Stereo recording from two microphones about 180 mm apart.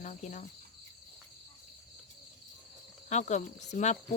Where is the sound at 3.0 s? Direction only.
40° left (ahead or behind).